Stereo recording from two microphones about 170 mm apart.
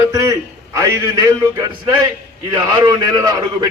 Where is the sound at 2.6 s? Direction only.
25° right (ahead or behind).